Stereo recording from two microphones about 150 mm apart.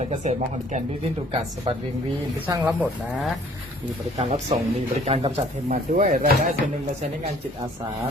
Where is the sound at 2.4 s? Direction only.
10° right (ahead or behind).